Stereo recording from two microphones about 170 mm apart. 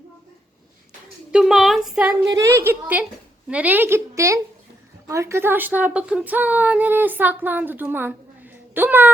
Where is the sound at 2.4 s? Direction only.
15° right (ahead or behind).